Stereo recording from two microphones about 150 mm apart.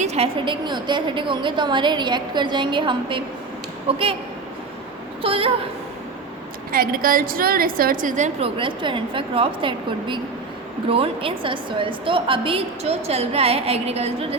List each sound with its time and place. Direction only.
0.0 s a woman's voice: 45° right (ahead or behind)
5.2 s a woman's voice: 40° right (ahead or behind)
6.7 s a woman's voice: 70° right (ahead or behind); by 8.4 s 55° right (ahead or behind)
8.4 s a woman's voice: 35° right (ahead or behind)